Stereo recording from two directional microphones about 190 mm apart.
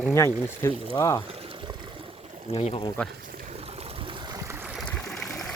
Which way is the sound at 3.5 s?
30° right (ahead or behind).